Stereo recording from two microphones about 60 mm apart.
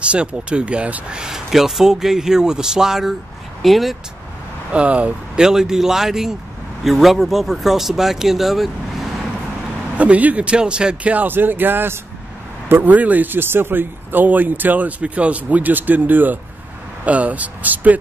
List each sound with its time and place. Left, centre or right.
0.0 s speech: centre
4.7 s speech: right
5.4 s speech: centre
9.9 s speech: right
11.1 s speech: right